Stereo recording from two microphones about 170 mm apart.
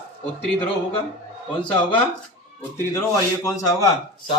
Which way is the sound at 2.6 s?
15° left (ahead or behind).